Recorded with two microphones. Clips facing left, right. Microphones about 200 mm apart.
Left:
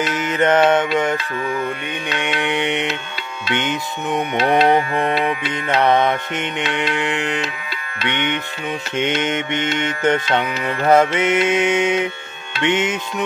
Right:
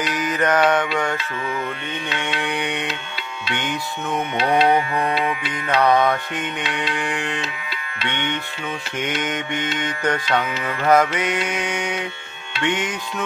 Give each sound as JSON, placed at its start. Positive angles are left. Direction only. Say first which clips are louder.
{"t": 0.1, "sound": "music", "louder": "left 3 dB", "side_deg": 25}
{"t": 2.1, "sound": "music", "louder": "left 5 dB", "side_deg": 20}
{"t": 4.6, "sound": "mantra", "louder": "left 2 dB", "side_deg": 45}
{"t": 5.7, "sound": "music", "louder": "left 1 dB", "side_deg": 25}